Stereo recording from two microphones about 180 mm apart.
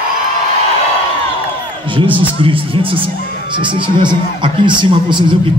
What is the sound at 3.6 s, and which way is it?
A man's voice, 25° right (ahead or behind).